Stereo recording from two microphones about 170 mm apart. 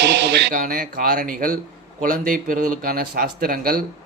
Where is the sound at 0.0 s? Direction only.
85° right.